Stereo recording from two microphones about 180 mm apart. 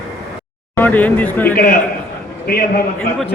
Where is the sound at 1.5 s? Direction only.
50° left (ahead or behind).